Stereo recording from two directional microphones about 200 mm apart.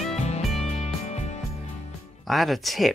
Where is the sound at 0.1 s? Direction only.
35° left (ahead or behind).